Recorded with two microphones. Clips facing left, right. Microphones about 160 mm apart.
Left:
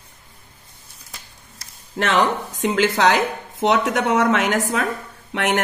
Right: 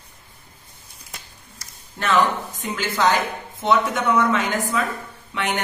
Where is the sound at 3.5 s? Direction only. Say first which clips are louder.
Left 1 dB; 90° left.